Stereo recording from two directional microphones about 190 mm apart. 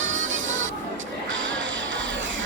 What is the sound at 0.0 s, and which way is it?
Music, 85° right.